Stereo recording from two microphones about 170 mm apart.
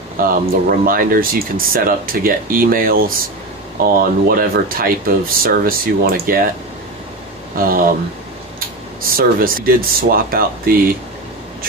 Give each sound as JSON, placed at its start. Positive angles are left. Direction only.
{"t": 0.2, "sound": "speech", "side_deg": -55}
{"t": 7.5, "sound": "speech", "side_deg": -55}
{"t": 9.1, "sound": "speech", "side_deg": -55}